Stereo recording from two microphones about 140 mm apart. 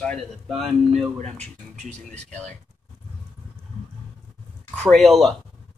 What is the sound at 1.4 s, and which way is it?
Speech, 50° right (ahead or behind).